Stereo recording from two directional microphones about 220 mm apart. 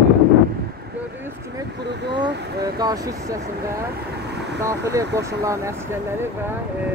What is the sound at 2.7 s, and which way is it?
Speech, 15° right (ahead or behind).